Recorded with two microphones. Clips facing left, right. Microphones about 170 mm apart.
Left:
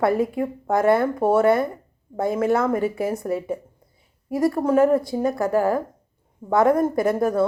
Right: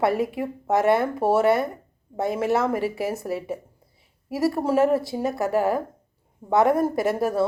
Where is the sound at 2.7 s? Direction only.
25° left (ahead or behind).